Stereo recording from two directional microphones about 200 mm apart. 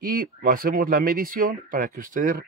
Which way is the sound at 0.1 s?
45° right (ahead or behind).